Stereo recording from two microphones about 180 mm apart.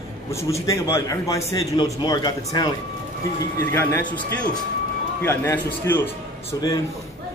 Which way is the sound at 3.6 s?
10° left (ahead or behind).